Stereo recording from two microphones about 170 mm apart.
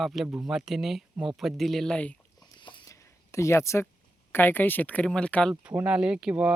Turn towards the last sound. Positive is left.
turn(degrees=-5)  # may be behind; listen again after turning